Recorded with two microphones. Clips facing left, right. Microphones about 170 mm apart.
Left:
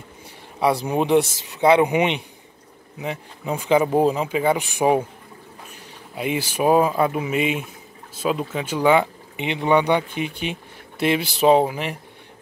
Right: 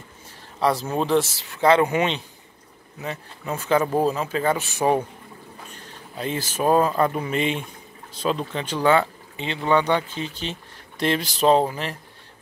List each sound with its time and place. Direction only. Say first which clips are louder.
0.6 s speech: left 2 dB; 15° left (ahead or behind)